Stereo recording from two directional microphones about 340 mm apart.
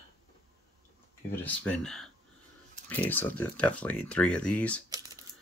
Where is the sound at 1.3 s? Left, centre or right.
Centre.